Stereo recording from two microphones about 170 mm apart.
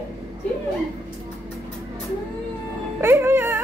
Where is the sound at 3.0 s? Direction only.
15° right (ahead or behind).